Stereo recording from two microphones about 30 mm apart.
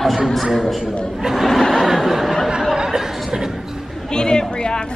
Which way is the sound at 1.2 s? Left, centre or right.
Right.